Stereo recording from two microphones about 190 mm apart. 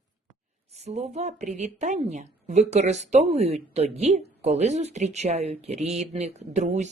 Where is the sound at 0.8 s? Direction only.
35° right (ahead or behind).